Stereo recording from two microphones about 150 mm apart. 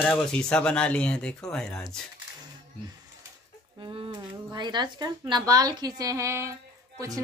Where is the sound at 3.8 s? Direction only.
30° right (ahead or behind).